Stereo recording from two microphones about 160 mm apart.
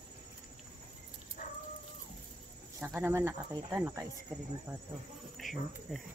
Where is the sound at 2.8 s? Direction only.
15° right (ahead or behind).